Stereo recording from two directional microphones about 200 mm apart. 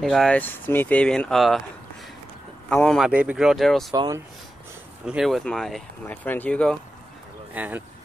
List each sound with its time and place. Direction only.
0.0 s speech: centre (ahead or behind)
2.7 s speech: 5° left (ahead or behind)
3.1 s speech: 5° right (ahead or behind)
3.9 s speech: 20° right (ahead or behind)
5.0 s speech: centre (ahead or behind)
7.5 s speech: 10° right (ahead or behind)